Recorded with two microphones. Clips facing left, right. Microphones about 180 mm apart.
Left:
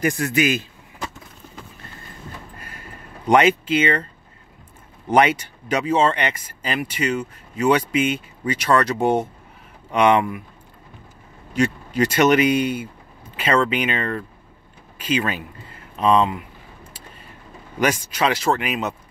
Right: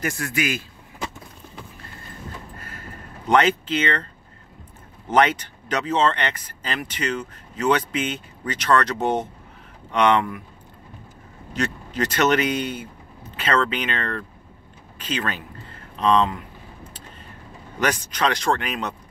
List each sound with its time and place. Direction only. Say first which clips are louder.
0.0 s a man's voice: left 6 dB; 20° left (ahead or behind)
3.3 s speech: left 3 dB; 10° left (ahead or behind)
5.1 s speech: left 2 dB; 10° left (ahead or behind)
11.5 s speech: left 6 dB; 10° left (ahead or behind)
17.7 s speech: left 3 dB; 10° left (ahead or behind)